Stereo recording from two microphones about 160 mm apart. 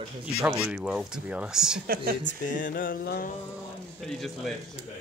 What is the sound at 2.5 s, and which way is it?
Mantra, 55° left (ahead or behind).